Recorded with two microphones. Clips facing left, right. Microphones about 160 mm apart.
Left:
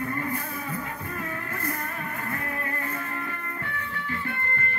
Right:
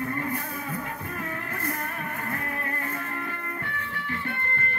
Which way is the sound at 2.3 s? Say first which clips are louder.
Even; 55° right (ahead or behind).